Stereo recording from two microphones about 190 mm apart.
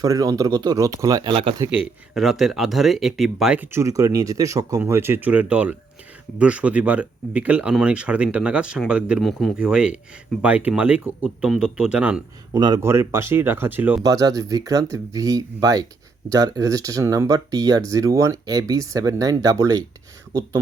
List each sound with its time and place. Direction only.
0.0 s speech: 20° right (ahead or behind)
1.7 s speech: centre (ahead or behind)
12.5 s speech: 20° right (ahead or behind)